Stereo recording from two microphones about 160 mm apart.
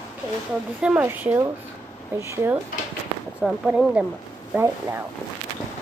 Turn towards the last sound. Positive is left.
turn(degrees=-15)  # may be behind; listen again after turning